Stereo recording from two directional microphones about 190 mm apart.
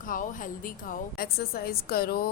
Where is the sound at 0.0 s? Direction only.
45° left (ahead or behind).